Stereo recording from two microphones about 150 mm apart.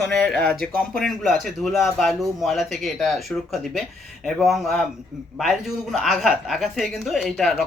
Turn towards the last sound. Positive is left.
turn(degrees=0)  # may be behind; listen again after turning